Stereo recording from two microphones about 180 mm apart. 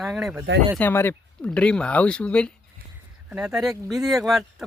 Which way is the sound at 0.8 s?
10° left (ahead or behind).